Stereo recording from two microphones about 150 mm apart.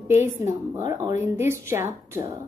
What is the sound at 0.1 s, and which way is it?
A woman's voice, 15° right (ahead or behind).